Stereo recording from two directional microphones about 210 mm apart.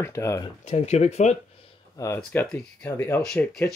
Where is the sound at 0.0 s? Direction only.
15° left (ahead or behind).